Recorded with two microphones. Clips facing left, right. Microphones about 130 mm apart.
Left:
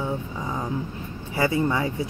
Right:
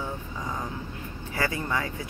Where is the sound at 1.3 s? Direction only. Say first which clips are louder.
Left 6 dB; 20° left (ahead or behind).